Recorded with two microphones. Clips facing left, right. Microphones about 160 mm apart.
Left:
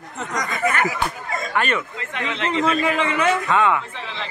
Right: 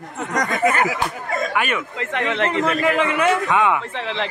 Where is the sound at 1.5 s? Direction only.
10° right (ahead or behind).